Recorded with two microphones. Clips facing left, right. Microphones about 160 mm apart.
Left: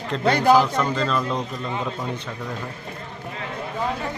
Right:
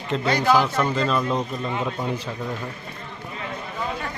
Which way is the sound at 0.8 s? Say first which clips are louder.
Right 1 dB; 5° right (ahead or behind).